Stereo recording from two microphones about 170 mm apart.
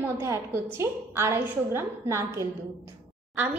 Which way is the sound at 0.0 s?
15° right (ahead or behind).